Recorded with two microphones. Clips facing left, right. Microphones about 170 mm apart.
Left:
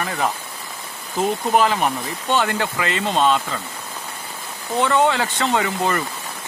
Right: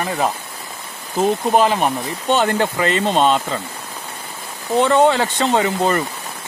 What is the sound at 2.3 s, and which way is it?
Speech, 35° right (ahead or behind).